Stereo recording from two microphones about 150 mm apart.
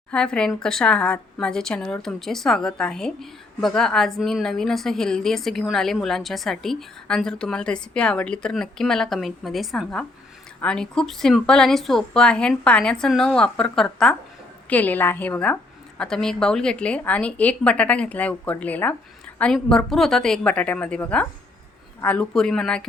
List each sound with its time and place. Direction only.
0.1 s a woman's voice: 5° left (ahead or behind)